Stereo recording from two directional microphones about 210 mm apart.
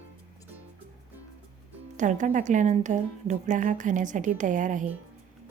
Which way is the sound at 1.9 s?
35° right (ahead or behind).